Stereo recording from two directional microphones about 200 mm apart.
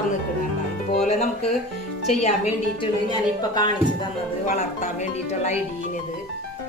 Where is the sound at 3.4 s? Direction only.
20° left (ahead or behind).